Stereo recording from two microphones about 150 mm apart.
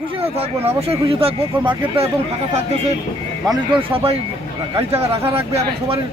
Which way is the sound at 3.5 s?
35° right (ahead or behind).